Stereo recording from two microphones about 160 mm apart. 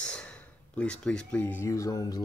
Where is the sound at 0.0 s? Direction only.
5° left (ahead or behind).